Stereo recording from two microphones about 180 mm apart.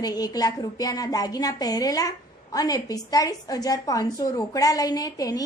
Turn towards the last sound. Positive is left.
turn(degrees=20)  # may be behind; listen again after turning